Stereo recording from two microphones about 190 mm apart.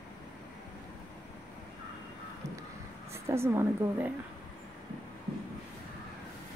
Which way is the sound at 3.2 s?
15° right (ahead or behind).